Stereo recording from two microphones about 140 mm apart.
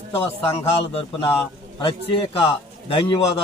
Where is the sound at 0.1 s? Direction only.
40° left (ahead or behind).